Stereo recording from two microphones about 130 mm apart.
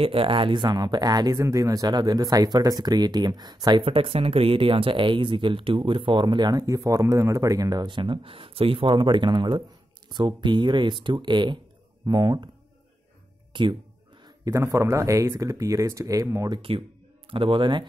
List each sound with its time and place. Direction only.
0.0 s speech: 45° right (ahead or behind)
3.8 s speech: 45° right (ahead or behind)
13.5 s music: 40° right (ahead or behind)
14.2 s speech: 25° right (ahead or behind)